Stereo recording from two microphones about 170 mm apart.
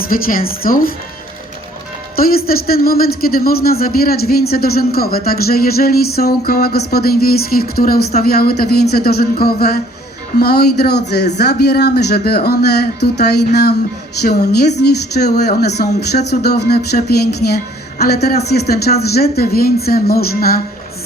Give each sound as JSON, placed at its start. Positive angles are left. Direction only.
{"t": 0.1, "sound": "speech", "side_deg": 55}
{"t": 2.1, "sound": "a woman's voice", "side_deg": 60}